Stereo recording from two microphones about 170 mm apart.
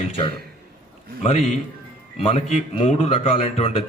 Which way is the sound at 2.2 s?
35° left (ahead or behind).